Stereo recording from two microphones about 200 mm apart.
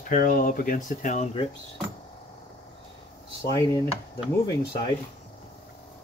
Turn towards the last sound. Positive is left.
turn(degrees=20)  # may be behind; listen again after turning